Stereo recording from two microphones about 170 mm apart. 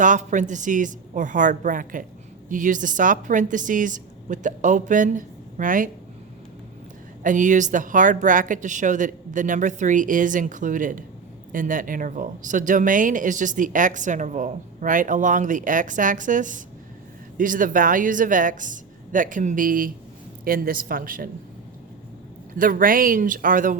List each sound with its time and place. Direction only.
0.0 s speech: 45° right (ahead or behind)
7.2 s speech: 50° right (ahead or behind)
22.5 s speech: 55° right (ahead or behind)